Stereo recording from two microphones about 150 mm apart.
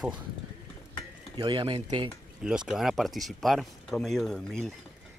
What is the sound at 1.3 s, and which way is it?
Speech, 30° right (ahead or behind).